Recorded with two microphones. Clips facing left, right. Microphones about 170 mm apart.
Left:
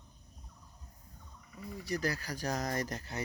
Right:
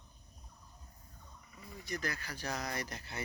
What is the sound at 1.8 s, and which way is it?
Speech, 35° left (ahead or behind).